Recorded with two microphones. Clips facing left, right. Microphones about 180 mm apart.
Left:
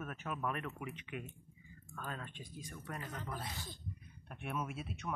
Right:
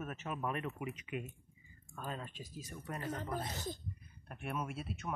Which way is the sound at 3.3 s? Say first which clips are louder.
Right 5 dB; 45° right (ahead or behind).